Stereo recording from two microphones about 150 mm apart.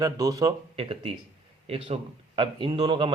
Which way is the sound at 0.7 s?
40° right (ahead or behind).